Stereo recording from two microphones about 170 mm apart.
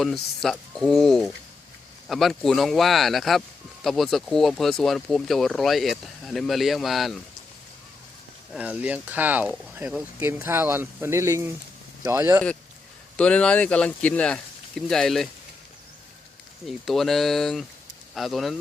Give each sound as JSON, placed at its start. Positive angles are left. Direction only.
{"t": 0.0, "sound": "speech", "side_deg": 0}
{"t": 8.5, "sound": "speech", "side_deg": -10}
{"t": 13.1, "sound": "speech", "side_deg": 5}
{"t": 16.6, "sound": "speech", "side_deg": 0}